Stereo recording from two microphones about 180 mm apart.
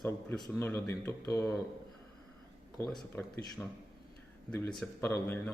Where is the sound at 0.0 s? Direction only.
5° left (ahead or behind).